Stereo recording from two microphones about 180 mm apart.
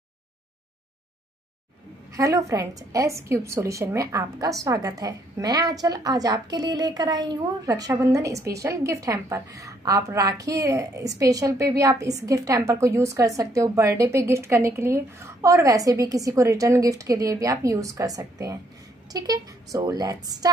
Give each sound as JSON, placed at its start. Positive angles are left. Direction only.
{"t": 2.1, "sound": "a woman's voice", "side_deg": -15}